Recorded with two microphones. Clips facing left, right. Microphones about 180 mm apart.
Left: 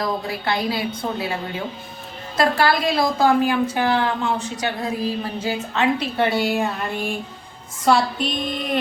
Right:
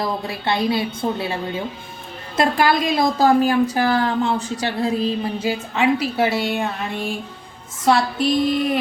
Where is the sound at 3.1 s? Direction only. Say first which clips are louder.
Right 3 dB; 40° right (ahead or behind).